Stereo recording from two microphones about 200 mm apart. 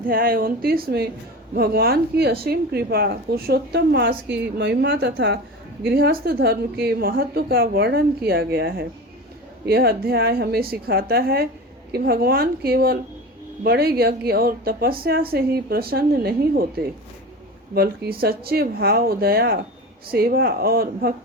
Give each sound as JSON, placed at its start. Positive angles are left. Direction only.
{"t": 0.0, "sound": "a woman's voice", "side_deg": -45}
{"t": 5.8, "sound": "a woman's voice", "side_deg": -50}
{"t": 9.6, "sound": "a woman's voice", "side_deg": -50}
{"t": 17.7, "sound": "a woman's voice", "side_deg": -50}